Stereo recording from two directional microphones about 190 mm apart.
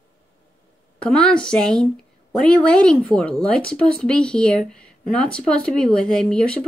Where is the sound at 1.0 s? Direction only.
5° left (ahead or behind).